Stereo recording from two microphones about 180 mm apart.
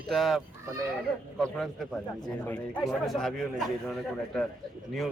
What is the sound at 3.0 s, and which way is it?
A man's voice, centre (ahead or behind).